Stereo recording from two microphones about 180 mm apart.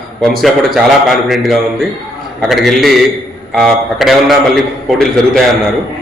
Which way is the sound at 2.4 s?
Centre (ahead or behind).